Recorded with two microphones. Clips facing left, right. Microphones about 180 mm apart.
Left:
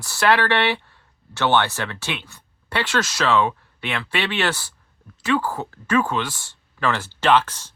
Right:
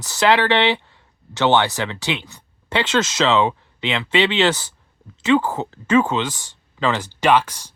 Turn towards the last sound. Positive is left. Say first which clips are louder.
# right 1 dB
turn(degrees=-15)  # may be behind; listen again after turning